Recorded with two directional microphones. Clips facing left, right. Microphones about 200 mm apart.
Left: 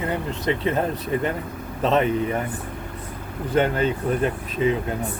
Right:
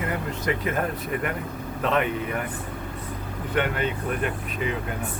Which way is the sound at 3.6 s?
30° left (ahead or behind).